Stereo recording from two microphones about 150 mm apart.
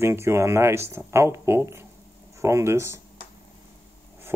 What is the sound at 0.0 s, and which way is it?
Speech, 15° right (ahead or behind).